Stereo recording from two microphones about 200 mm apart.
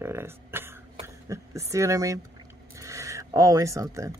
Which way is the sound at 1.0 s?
15° right (ahead or behind).